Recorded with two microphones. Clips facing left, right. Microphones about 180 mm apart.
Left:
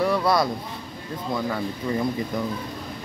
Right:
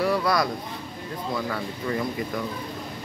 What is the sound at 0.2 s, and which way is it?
Speech, 25° left (ahead or behind).